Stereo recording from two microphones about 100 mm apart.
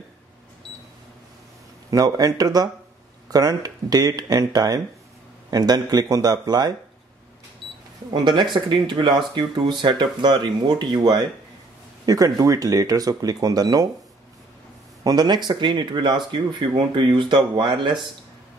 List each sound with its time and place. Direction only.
1.9 s speech: 40° right (ahead or behind)
8.1 s speech: 50° right (ahead or behind)
15.0 s speech: 45° right (ahead or behind)